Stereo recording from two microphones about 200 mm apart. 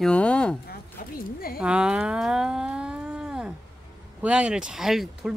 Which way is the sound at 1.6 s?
5° right (ahead or behind).